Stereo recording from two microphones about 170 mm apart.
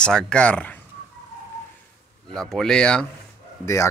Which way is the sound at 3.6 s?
20° left (ahead or behind).